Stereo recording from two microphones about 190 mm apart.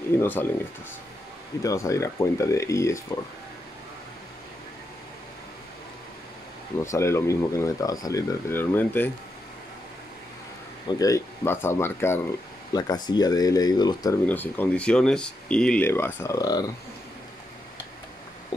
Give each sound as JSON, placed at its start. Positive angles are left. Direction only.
{"t": 0.2, "sound": "speech", "side_deg": 10}
{"t": 1.6, "sound": "speech", "side_deg": 15}
{"t": 6.8, "sound": "speech", "side_deg": 15}
{"t": 10.9, "sound": "speech", "side_deg": 20}
{"t": 14.2, "sound": "speech", "side_deg": 10}